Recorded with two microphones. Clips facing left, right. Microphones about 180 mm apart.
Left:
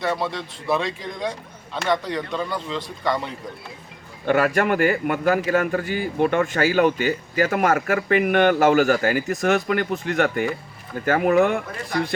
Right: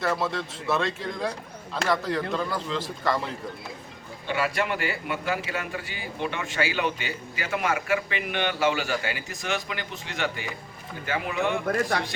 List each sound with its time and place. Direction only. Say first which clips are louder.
0.0 s a man's voice: left 2 dB; centre (ahead or behind)
4.3 s a man's voice: left 8 dB; 50° left (ahead or behind)
11.7 s speech: even; 60° right (ahead or behind)